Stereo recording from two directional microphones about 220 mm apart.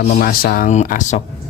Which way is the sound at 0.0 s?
40° left (ahead or behind).